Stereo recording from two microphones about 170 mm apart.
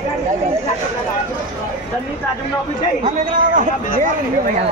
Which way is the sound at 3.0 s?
45° right (ahead or behind).